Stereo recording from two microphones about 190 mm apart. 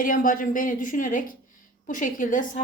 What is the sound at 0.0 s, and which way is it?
A woman's voice, 45° left (ahead or behind).